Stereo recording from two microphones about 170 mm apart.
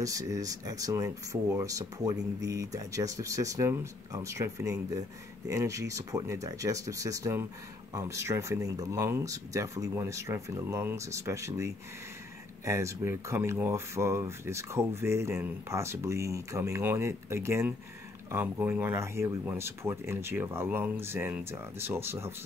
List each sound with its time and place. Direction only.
0.0 s speech: 20° right (ahead or behind)